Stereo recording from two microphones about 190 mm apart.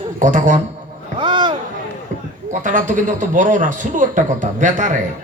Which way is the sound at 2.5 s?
45° right (ahead or behind).